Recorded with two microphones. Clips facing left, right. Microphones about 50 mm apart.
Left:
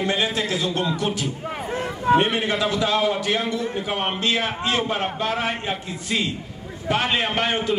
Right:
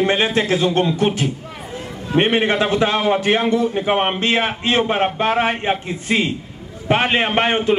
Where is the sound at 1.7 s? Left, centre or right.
Left.